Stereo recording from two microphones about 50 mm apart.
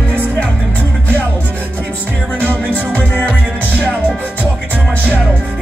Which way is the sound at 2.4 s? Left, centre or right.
Left.